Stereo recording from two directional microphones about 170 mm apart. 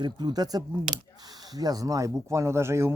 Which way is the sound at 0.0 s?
25° right (ahead or behind).